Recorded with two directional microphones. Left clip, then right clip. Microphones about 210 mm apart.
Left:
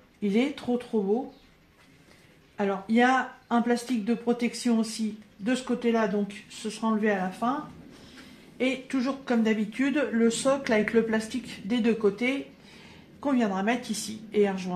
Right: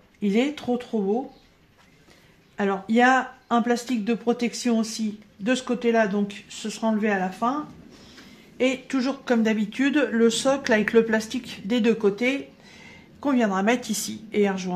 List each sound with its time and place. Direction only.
0.2 s speech: 35° right (ahead or behind)
2.5 s speech: 40° right (ahead or behind)
8.5 s speech: 45° right (ahead or behind)